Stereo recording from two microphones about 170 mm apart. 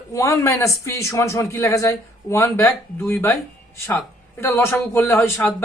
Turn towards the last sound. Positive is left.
turn(degrees=15)  # may be behind; listen again after turning